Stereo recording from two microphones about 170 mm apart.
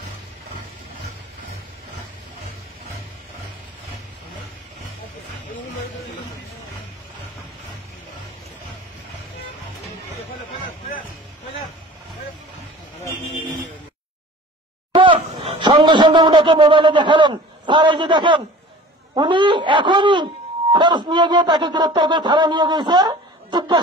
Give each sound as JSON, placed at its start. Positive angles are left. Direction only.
{"t": 15.0, "sound": "a man's voice", "side_deg": -35}